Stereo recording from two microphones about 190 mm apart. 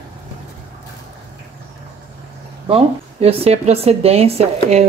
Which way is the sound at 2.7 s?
30° right (ahead or behind).